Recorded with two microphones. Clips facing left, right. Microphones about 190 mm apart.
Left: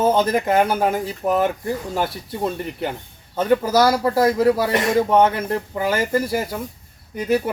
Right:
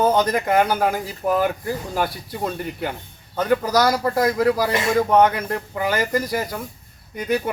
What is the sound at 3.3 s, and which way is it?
Speech, 25° left (ahead or behind).